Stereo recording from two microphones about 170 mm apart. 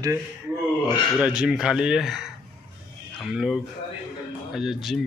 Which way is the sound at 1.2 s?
5° right (ahead or behind).